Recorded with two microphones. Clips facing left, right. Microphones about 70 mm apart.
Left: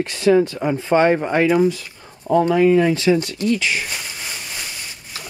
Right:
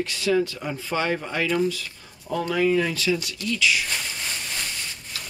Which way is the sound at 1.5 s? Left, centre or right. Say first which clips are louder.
Left 7 dB; centre.